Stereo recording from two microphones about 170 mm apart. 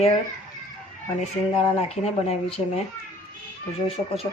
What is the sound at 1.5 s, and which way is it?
Speech, 40° left (ahead or behind).